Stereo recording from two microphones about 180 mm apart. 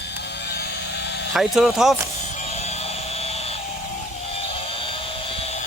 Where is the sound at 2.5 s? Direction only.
35° left (ahead or behind).